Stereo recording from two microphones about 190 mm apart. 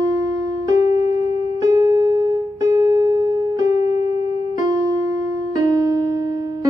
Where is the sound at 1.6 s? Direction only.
20° right (ahead or behind).